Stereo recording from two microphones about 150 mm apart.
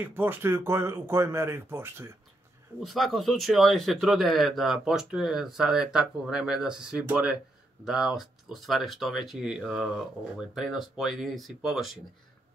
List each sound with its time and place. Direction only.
0.0 s speech: 15° right (ahead or behind)
2.8 s speech: centre (ahead or behind)